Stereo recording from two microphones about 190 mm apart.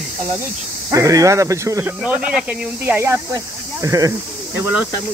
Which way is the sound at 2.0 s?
5° right (ahead or behind).